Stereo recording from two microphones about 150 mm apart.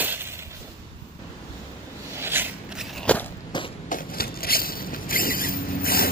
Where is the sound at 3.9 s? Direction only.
75° left (ahead or behind).